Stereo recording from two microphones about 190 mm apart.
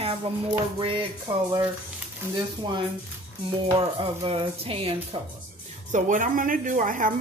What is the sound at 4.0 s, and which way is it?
Speech, 30° right (ahead or behind).